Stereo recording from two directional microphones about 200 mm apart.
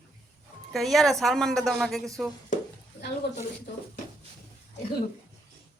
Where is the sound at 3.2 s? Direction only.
55° left (ahead or behind).